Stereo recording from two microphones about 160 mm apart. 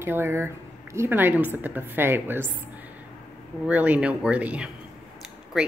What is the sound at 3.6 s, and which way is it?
A woman's voice, 10° right (ahead or behind).